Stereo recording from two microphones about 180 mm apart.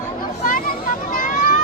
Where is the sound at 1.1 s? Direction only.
45° left (ahead or behind).